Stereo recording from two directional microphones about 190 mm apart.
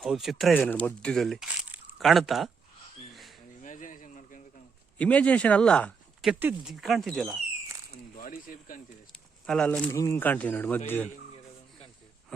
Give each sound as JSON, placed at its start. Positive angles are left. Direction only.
{"t": 0.0, "sound": "speech", "side_deg": 0}
{"t": 3.6, "sound": "a sound", "side_deg": 45}
{"t": 4.9, "sound": "speech", "side_deg": 5}
{"t": 8.1, "sound": "speech", "side_deg": 45}
{"t": 9.5, "sound": "speech", "side_deg": 5}